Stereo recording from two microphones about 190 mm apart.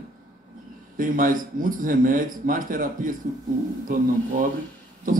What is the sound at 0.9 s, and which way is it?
A man's voice, 45° right (ahead or behind).